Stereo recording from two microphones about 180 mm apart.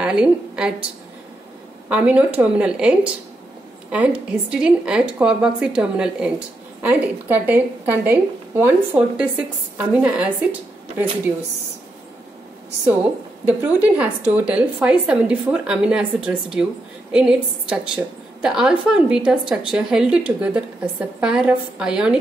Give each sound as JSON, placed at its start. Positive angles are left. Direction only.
{"t": 0.0, "sound": "a woman's voice", "side_deg": -5}
{"t": 1.9, "sound": "a woman's voice", "side_deg": -10}
{"t": 13.5, "sound": "a woman's voice", "side_deg": -10}